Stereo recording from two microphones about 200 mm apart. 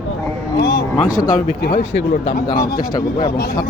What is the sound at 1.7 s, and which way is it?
A man's voice, 30° left (ahead or behind).